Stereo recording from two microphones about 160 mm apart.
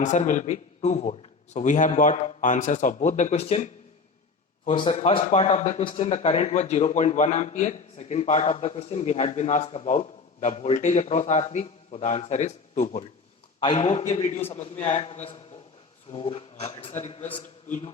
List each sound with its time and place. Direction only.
0.0 s a man's voice: 50° left (ahead or behind)
4.7 s a man's voice: 35° left (ahead or behind)